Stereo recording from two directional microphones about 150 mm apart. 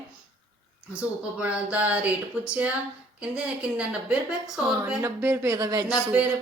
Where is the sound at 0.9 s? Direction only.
10° right (ahead or behind).